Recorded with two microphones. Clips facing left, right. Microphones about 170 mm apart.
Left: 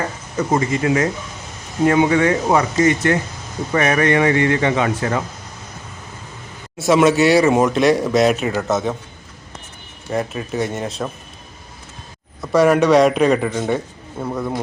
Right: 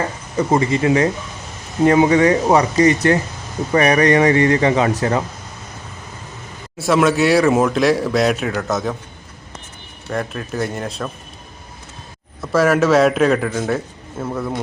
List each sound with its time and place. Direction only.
0.3 s speech: 25° right (ahead or behind)
6.7 s speech: centre (ahead or behind)
10.1 s speech: 5° left (ahead or behind)
12.4 s speech: centre (ahead or behind)